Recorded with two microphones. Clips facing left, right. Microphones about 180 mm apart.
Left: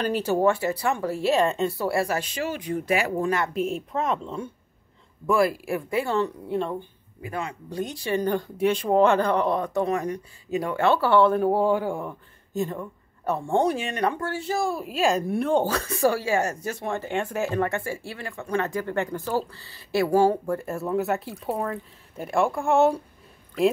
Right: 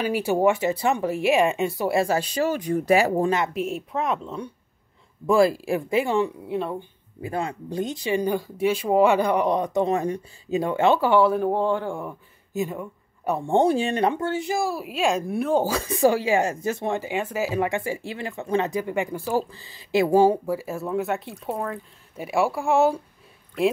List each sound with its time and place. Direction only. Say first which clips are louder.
0.0 s speech: right 1 dB; 10° right (ahead or behind); by 3.3 s 35° right (ahead or behind)
3.3 s speech: right 2 dB; 20° right (ahead or behind)
3.5 s speech: even; 5° right (ahead or behind)
5.2 s speech: right 3 dB; 25° right (ahead or behind)
6.4 s speech: even; 5° right (ahead or behind)
7.2 s speech: right 4 dB; 30° right (ahead or behind); by 14.7 s 15° right (ahead or behind)
14.7 s speech: even; 5° right (ahead or behind); by 17.0 s 20° right (ahead or behind)
17.0 s speech: right 1 dB; 5° right (ahead or behind)
20.4 s speech: even; 5° right (ahead or behind)